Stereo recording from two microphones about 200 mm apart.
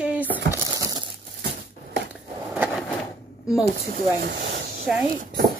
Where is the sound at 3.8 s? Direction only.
50° right (ahead or behind).